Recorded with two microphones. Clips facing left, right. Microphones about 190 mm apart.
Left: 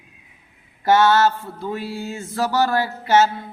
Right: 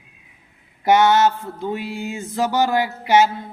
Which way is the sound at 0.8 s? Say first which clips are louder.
Right 1 dB; 15° right (ahead or behind).